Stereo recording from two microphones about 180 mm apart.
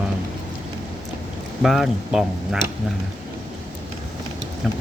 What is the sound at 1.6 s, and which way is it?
Speech, centre (ahead or behind).